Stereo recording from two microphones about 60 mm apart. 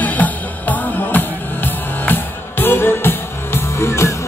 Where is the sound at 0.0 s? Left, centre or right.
Left.